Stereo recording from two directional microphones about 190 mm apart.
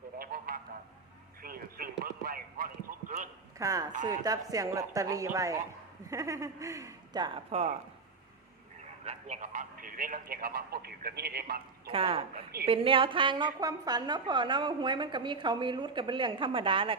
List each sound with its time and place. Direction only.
0.2 s a sound: 50° right (ahead or behind)
1.4 s radio: 50° right (ahead or behind)
3.6 s speech: 15° right (ahead or behind)
7.5 s speech: 35° right (ahead or behind)
9.0 s a man's voice: 35° right (ahead or behind); by 11.6 s 55° right (ahead or behind)
11.9 s a woman's voice: 30° right (ahead or behind)